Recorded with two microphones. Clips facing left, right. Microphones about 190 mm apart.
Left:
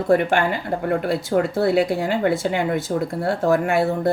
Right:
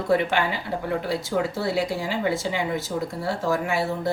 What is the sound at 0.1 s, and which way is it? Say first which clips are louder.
Speech: left 4 dB; 50° left (ahead or behind).